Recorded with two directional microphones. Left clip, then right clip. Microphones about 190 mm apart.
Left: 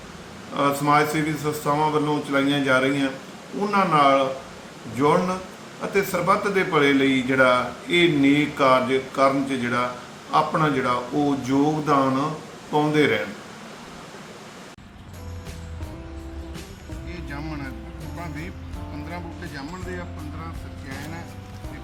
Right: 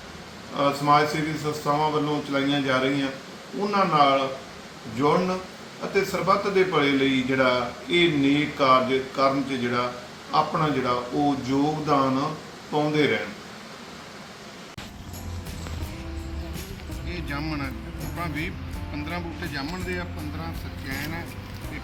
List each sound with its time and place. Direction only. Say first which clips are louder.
0.5 s a man's voice: left 1 dB; 5° left (ahead or behind)
17.1 s music: right 3 dB; 5° left (ahead or behind)
18.2 s a man's voice: right 5 dB; 5° left (ahead or behind)
19.5 s speech: right 3 dB; 20° right (ahead or behind)